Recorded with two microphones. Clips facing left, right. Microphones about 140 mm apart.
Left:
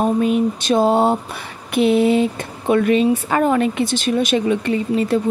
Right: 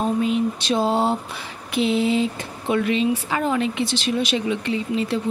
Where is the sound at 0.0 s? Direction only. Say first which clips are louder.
Left 4 dB; 50° left (ahead or behind).